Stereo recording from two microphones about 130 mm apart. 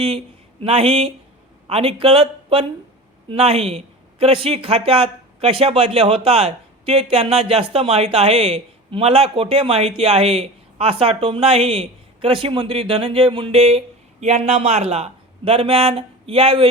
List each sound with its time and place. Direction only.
0.6 s speech: 45° right (ahead or behind)